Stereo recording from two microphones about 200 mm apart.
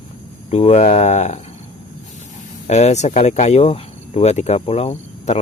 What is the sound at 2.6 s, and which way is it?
Speech, 35° left (ahead or behind).